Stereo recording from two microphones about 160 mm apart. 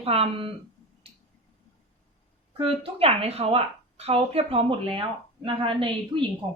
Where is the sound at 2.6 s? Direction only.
35° right (ahead or behind).